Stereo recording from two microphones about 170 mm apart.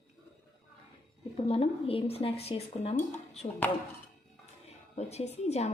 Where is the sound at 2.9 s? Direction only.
10° left (ahead or behind).